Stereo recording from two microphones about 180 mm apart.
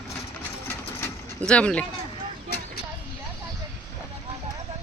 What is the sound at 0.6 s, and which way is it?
Vehicle, 10° left (ahead or behind).